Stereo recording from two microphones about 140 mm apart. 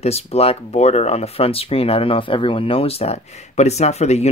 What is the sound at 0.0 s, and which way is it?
Speech, 45° left (ahead or behind).